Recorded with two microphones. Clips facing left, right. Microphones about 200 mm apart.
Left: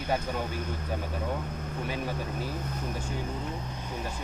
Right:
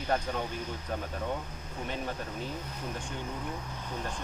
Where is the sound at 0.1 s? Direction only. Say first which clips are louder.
Left 1 dB; 5° left (ahead or behind).